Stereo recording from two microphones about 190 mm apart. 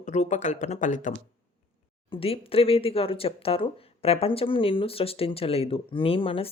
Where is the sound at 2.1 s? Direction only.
30° left (ahead or behind).